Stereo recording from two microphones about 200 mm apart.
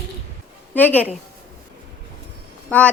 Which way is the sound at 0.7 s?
10° left (ahead or behind).